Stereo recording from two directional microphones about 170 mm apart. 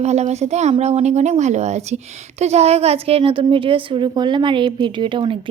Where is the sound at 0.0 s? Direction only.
40° right (ahead or behind).